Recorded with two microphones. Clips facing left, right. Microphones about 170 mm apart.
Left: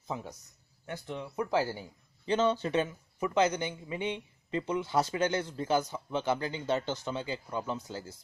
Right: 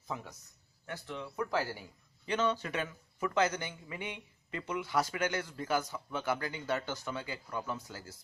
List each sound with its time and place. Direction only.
0.1 s a man's voice: 25° left (ahead or behind)